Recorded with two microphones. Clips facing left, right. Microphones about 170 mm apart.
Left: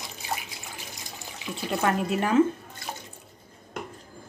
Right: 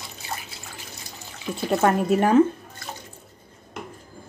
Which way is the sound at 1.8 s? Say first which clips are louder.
Right 5 dB; 45° right (ahead or behind).